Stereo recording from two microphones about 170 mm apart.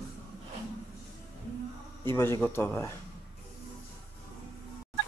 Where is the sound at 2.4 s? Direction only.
15° left (ahead or behind).